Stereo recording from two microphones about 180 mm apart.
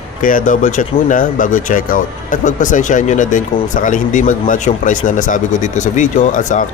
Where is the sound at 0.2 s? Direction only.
50° left (ahead or behind).